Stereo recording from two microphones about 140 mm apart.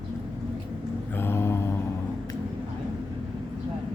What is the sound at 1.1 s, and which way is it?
Mantra, 15° left (ahead or behind).